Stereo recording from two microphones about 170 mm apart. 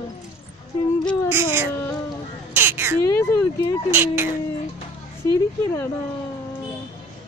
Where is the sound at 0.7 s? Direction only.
20° left (ahead or behind).